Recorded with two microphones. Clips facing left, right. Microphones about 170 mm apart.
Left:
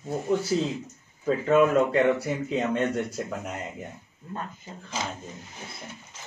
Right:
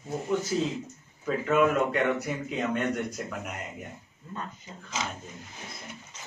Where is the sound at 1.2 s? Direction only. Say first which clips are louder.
Left 3 dB; 30° left (ahead or behind).